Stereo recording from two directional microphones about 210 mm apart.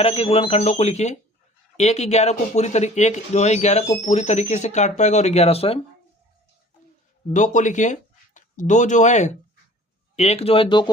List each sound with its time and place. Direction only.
0.0 s speech: 30° left (ahead or behind)
7.3 s speech: 35° left (ahead or behind)